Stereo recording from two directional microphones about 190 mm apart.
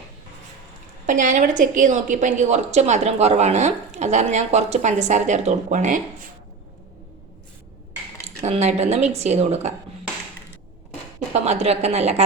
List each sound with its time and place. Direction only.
1.0 s a woman's voice: 40° right (ahead or behind)
8.4 s a woman's voice: 35° right (ahead or behind)
11.3 s a woman's voice: 35° right (ahead or behind)